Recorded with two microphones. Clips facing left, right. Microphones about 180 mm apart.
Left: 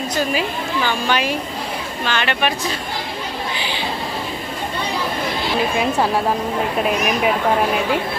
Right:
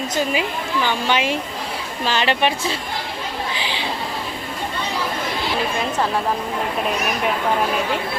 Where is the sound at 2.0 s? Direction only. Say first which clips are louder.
Right 2 dB; 35° right (ahead or behind).